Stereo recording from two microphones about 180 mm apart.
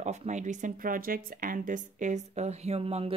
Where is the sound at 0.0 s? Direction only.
40° right (ahead or behind).